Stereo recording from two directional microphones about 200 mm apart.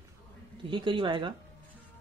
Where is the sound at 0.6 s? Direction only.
25° right (ahead or behind).